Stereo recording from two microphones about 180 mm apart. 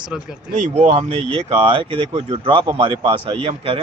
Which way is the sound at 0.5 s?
40° right (ahead or behind).